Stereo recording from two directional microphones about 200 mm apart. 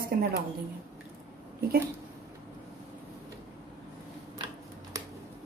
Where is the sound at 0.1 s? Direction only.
50° right (ahead or behind).